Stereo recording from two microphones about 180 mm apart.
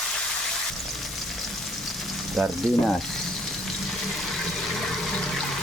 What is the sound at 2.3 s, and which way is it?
Speech, centre (ahead or behind).